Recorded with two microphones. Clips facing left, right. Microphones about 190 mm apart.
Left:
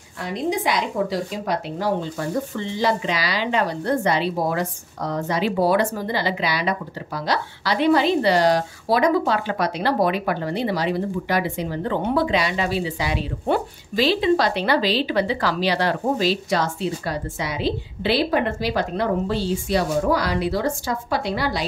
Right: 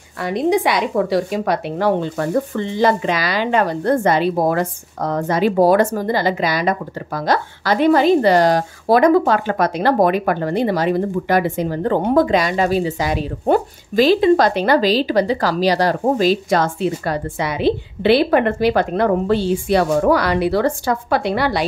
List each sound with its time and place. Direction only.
0.2 s speech: 65° right (ahead or behind)